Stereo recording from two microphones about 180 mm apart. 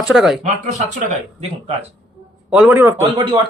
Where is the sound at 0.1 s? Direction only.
Centre (ahead or behind).